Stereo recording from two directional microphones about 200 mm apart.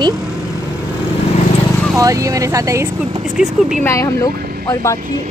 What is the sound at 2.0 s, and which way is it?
Speech, 15° right (ahead or behind).